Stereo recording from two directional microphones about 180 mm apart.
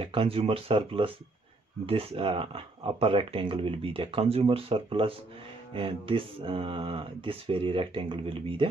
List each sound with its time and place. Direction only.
0.0 s speech: 30° right (ahead or behind)